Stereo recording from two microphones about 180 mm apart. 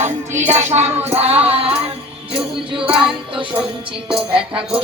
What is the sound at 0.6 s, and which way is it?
Speech, 40° right (ahead or behind).